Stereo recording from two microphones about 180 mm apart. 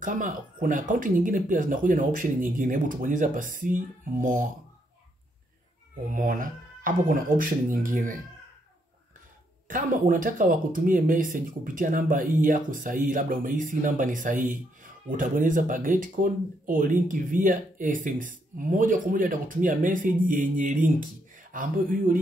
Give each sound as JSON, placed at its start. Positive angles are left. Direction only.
{"t": 0.0, "sound": "speech", "side_deg": -45}
{"t": 6.0, "sound": "speech", "side_deg": -50}
{"t": 9.7, "sound": "speech", "side_deg": -45}